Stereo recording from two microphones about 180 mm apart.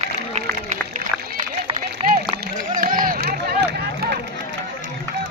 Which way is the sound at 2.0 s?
30° right (ahead or behind).